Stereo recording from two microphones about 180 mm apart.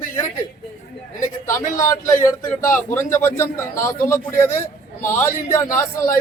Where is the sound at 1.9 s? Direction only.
15° left (ahead or behind).